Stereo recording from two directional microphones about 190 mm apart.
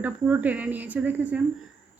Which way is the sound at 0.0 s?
10° right (ahead or behind).